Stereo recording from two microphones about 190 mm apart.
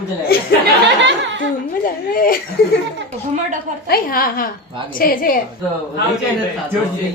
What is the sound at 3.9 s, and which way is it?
A woman's voice, 50° left (ahead or behind).